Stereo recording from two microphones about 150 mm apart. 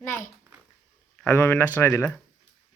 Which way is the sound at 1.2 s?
15° left (ahead or behind).